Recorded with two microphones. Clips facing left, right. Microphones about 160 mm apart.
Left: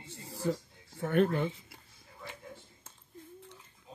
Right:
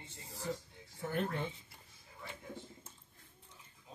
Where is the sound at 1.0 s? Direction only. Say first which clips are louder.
Left 9 dB; 75° left (ahead or behind).